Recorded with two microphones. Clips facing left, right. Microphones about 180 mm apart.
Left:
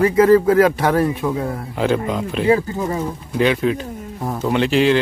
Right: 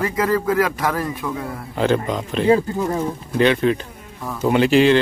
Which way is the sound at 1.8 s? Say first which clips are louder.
Even; 5° left (ahead or behind).